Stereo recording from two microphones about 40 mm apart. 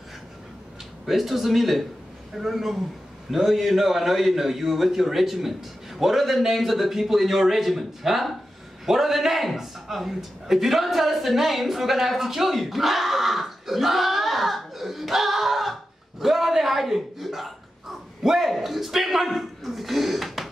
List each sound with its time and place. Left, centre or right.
1.0 s a man's voice: centre